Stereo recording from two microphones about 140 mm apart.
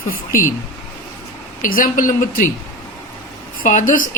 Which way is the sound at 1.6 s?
80° left.